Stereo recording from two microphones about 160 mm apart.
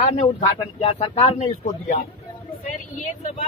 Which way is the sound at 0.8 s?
35° left (ahead or behind).